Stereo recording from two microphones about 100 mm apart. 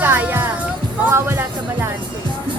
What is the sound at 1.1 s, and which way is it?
Speech, 25° right (ahead or behind).